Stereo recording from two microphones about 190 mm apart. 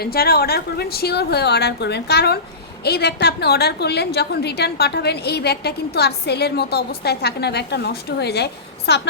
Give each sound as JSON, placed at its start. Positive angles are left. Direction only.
{"t": 0.0, "sound": "a woman's voice", "side_deg": 55}